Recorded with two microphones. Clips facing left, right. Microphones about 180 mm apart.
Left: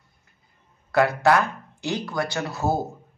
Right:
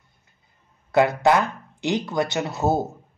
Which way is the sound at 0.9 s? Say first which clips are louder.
Right 1 dB; 20° right (ahead or behind).